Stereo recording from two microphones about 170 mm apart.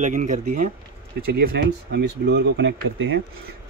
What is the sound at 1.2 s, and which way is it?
Speech, 65° right (ahead or behind).